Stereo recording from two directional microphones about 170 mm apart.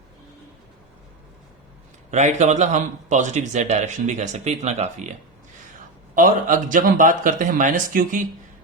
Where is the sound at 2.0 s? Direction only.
45° right (ahead or behind).